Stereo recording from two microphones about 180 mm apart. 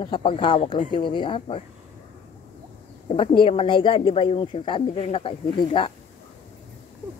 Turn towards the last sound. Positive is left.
turn(degrees=30)  # may be behind; listen again after turning